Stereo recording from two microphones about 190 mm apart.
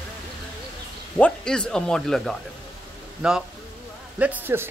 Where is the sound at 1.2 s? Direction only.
5° left (ahead or behind).